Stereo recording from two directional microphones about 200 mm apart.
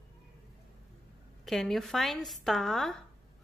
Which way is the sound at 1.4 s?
Centre (ahead or behind).